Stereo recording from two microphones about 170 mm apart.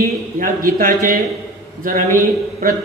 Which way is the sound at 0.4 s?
60° right (ahead or behind).